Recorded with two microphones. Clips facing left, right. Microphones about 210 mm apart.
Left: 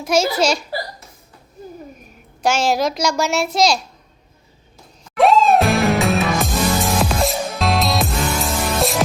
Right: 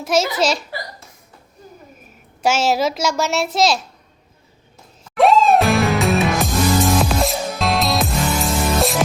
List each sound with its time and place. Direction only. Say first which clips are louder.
0.0 s a child's voice: left 1 dB; centre (ahead or behind)
2.4 s a child's voice: even; 5° right (ahead or behind)
5.1 s music: even; centre (ahead or behind)